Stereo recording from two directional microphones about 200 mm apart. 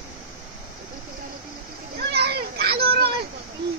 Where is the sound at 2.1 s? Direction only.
55° right (ahead or behind).